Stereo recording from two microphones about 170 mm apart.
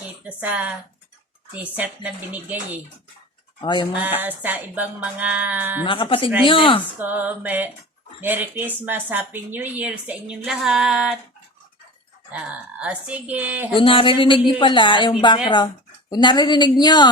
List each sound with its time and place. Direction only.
0.3 s a woman's voice: 10° right (ahead or behind)
3.6 s a woman's voice: 30° left (ahead or behind)
3.9 s a woman's voice: 10° right (ahead or behind)
5.8 s a woman's voice: 30° left (ahead or behind)
7.0 s a woman's voice: 10° right (ahead or behind)
12.3 s a woman's voice: 5° right (ahead or behind)
13.7 s a woman's voice: 30° left (ahead or behind)